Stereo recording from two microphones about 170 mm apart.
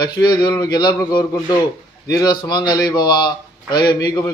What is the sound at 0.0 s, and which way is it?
A man's voice, 25° left (ahead or behind).